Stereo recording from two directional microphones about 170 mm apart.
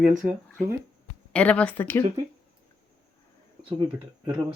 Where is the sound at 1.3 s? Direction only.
5° left (ahead or behind).